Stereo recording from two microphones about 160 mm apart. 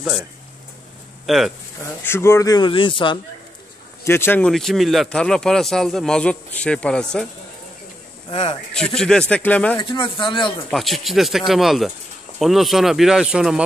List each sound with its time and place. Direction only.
1.2 s speech: centre (ahead or behind)
2.0 s speech: 15° left (ahead or behind); by 3.2 s 30° left (ahead or behind)
4.0 s speech: 15° left (ahead or behind)
4.5 s a man's voice: centre (ahead or behind)
8.3 s speech: 35° left (ahead or behind)
8.7 s a man's voice: 5° left (ahead or behind)
9.8 s speech: 30° left (ahead or behind)
10.7 s a man's voice: centre (ahead or behind)